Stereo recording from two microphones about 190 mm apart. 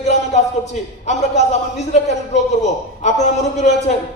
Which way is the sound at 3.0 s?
35° left (ahead or behind).